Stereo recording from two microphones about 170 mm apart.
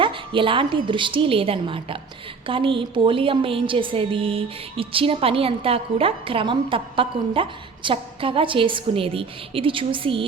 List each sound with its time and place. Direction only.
0.0 s a woman's voice: 30° right (ahead or behind)